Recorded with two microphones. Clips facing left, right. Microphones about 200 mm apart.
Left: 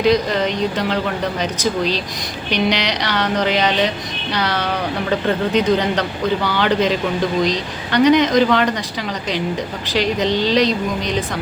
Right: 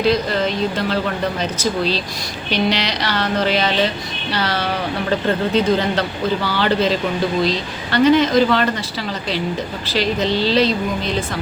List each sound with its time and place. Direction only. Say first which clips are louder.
0.0 s speech: left 1 dB; 15° left (ahead or behind)
5.5 s speech: left 1 dB; 15° left (ahead or behind)
9.9 s speech: left 1 dB; 15° left (ahead or behind)